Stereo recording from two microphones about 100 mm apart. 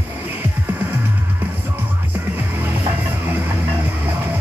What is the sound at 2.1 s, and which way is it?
Music, 20° right (ahead or behind).